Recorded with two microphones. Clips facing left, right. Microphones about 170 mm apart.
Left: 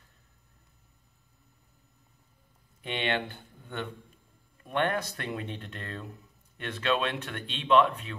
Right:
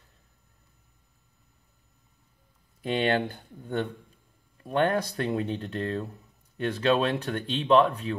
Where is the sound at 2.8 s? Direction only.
35° right (ahead or behind).